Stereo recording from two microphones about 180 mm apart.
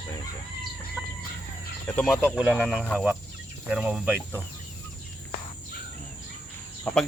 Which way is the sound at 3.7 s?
5° right (ahead or behind).